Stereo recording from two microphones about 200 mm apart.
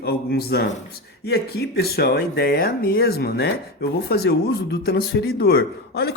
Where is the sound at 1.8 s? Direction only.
50° left (ahead or behind).